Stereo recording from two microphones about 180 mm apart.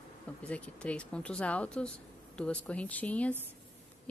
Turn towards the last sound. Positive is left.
turn(degrees=10)  # may be behind; listen again after turning